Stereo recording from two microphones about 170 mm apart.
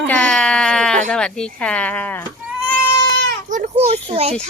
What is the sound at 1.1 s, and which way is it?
Speech, 5° left (ahead or behind).